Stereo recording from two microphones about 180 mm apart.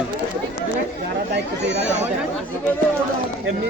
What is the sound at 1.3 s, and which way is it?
Chatter, 70° right (ahead or behind).